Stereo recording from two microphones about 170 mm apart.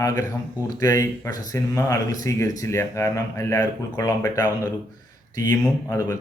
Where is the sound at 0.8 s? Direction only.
20° left (ahead or behind).